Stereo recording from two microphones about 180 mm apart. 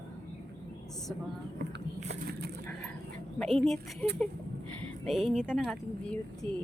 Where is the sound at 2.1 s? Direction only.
65° right (ahead or behind).